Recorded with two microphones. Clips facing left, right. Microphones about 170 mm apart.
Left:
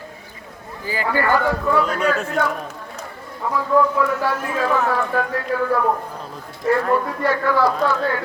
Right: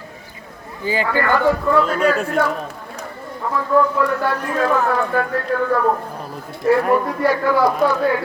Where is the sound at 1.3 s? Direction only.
Centre (ahead or behind).